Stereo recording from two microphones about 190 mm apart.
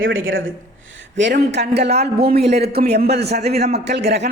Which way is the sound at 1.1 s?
65° right (ahead or behind).